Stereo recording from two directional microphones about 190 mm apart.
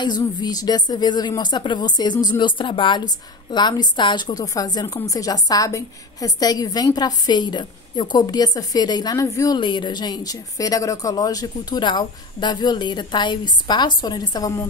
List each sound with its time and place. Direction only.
0.0 s a woman's voice: 20° left (ahead or behind)